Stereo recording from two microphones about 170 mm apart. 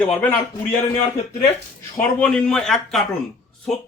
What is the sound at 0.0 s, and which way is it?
Speech, 10° left (ahead or behind).